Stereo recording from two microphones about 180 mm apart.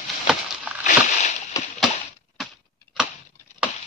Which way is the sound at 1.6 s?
20° left (ahead or behind).